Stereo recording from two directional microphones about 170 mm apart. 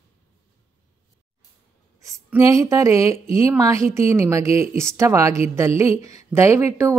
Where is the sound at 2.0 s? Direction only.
15° right (ahead or behind).